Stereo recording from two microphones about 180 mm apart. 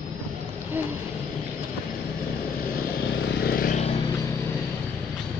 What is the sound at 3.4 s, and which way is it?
Vehicle, 55° left (ahead or behind).